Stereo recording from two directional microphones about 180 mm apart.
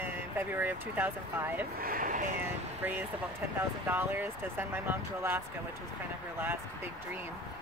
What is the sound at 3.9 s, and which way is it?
Speech, 10° right (ahead or behind).